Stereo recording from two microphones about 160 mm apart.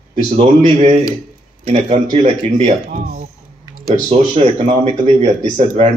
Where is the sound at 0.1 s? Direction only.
45° right (ahead or behind).